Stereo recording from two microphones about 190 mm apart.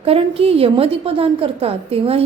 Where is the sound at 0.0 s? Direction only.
30° right (ahead or behind).